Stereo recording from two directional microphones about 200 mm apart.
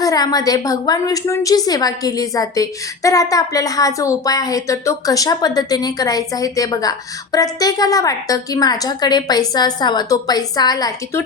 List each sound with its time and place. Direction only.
0.0 s a woman's voice: 20° left (ahead or behind)